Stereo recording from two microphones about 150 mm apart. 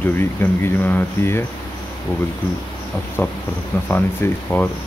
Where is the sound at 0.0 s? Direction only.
15° left (ahead or behind).